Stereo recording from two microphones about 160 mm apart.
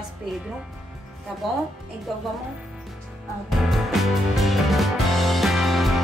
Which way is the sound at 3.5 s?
Centre (ahead or behind).